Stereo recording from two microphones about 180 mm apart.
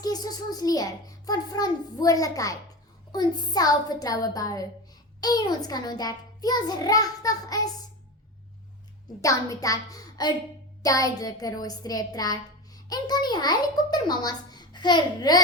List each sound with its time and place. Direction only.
0.0 s a woman's voice: 20° left (ahead or behind)
9.2 s a woman's voice: 20° left (ahead or behind)